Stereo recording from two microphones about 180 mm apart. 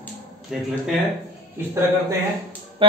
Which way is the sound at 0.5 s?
Centre (ahead or behind).